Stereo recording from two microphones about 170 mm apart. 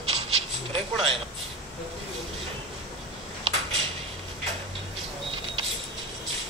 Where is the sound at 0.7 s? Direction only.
35° right (ahead or behind).